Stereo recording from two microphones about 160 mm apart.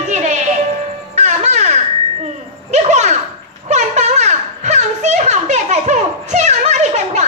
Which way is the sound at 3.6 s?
45° right (ahead or behind).